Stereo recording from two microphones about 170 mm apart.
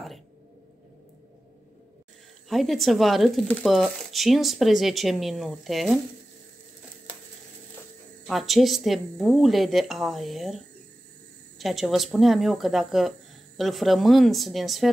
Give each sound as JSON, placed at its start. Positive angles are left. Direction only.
{"t": 2.5, "sound": "speech", "side_deg": 0}
{"t": 8.3, "sound": "speech", "side_deg": 0}